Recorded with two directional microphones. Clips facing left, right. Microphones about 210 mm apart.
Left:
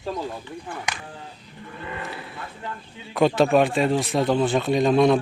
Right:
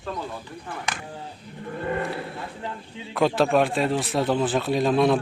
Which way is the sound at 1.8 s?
50° right (ahead or behind).